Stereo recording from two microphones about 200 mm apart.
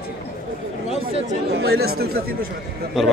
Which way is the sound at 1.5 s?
60° right (ahead or behind).